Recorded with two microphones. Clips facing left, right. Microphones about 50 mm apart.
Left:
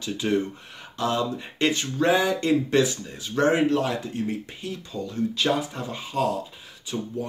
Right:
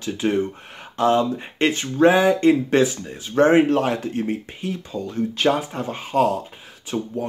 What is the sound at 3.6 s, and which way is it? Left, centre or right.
Speech, right.